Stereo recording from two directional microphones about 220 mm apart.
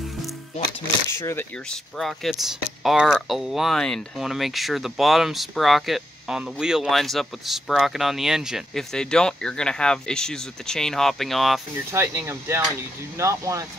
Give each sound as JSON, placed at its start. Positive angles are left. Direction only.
{"t": 1.1, "sound": "speech", "side_deg": 10}
{"t": 11.9, "sound": "speech", "side_deg": -10}